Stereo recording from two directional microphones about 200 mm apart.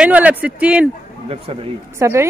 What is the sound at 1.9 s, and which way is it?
Speech, 15° right (ahead or behind).